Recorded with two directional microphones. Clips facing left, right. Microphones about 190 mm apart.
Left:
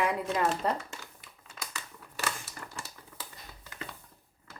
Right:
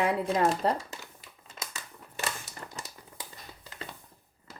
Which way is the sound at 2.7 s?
15° right (ahead or behind).